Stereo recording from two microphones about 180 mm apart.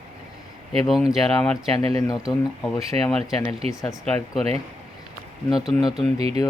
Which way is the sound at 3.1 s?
5° left (ahead or behind).